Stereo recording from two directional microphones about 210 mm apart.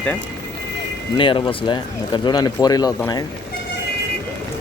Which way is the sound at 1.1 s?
25° left (ahead or behind).